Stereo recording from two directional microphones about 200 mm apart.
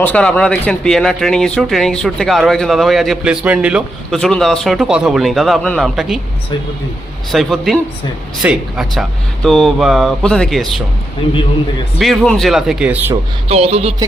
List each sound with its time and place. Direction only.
0.0 s speech: 5° left (ahead or behind)
7.3 s speech: centre (ahead or behind)
11.9 s speech: centre (ahead or behind)
13.5 s a sound: 30° right (ahead or behind)